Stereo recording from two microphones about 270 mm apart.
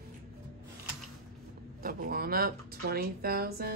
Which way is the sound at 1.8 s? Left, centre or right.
Right.